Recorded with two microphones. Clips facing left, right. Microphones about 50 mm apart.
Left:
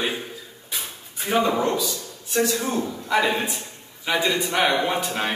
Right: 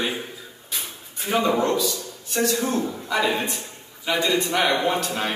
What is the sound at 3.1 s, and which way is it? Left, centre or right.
A man's voice, centre.